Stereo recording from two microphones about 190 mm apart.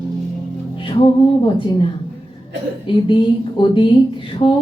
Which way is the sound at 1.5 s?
25° left (ahead or behind).